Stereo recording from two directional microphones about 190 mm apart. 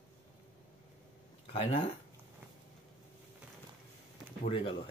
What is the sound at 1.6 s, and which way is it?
Speech, 40° left (ahead or behind).